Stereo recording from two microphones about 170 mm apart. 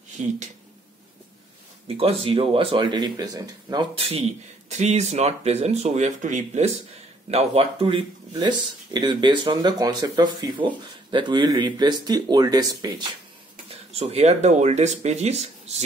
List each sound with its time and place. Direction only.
1.9 s speech: 35° right (ahead or behind)
13.7 s speech: 40° right (ahead or behind)